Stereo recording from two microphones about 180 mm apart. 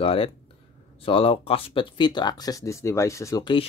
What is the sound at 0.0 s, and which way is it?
Speech, 30° left (ahead or behind).